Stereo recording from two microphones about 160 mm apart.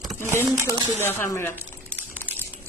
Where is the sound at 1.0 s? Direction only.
15° left (ahead or behind).